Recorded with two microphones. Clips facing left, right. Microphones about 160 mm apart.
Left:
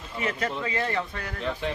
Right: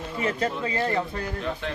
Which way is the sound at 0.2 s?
30° right (ahead or behind).